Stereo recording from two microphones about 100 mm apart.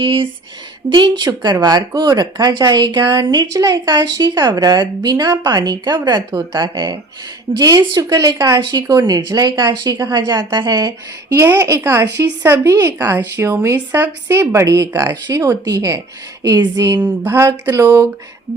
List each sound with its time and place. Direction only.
0.0 s a woman's voice: 60° right (ahead or behind); by 11.3 s 45° right (ahead or behind)
11.3 s a woman's voice: 25° right (ahead or behind)
17.2 s a woman's voice: 25° right (ahead or behind)